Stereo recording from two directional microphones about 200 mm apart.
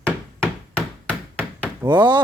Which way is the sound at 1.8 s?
20° right (ahead or behind).